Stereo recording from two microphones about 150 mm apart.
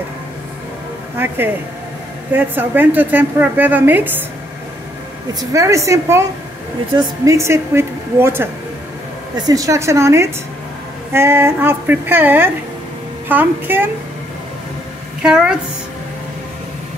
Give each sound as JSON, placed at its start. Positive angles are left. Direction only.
{"t": 1.1, "sound": "a woman's voice", "side_deg": -15}
{"t": 5.4, "sound": "a woman's voice", "side_deg": -20}
{"t": 9.5, "sound": "a woman's voice", "side_deg": -20}
{"t": 15.2, "sound": "a woman's voice", "side_deg": -5}